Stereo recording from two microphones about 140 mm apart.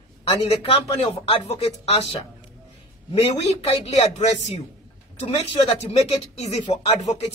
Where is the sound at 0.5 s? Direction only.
40° left (ahead or behind).